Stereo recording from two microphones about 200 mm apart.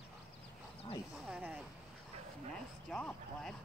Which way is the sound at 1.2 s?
5° right (ahead or behind).